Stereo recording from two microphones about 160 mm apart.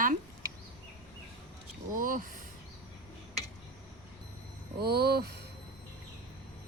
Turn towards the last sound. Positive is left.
turn(degrees=-85)